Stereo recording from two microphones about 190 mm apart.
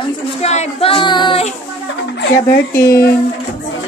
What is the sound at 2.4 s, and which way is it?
Speech, 15° left (ahead or behind).